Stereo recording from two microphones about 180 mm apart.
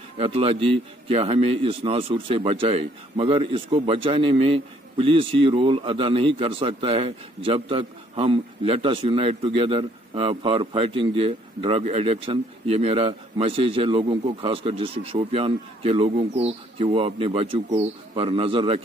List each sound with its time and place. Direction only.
0.2 s a man's voice: 30° right (ahead or behind)